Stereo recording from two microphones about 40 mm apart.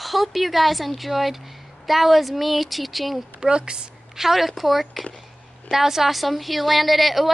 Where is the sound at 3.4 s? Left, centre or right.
Right.